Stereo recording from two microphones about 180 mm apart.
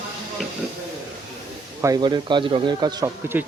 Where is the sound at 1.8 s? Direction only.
20° right (ahead or behind).